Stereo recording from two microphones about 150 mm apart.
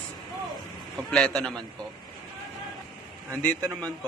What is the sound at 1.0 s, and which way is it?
Speech, 5° left (ahead or behind).